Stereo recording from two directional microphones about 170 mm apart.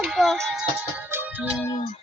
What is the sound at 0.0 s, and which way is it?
Music, centre (ahead or behind).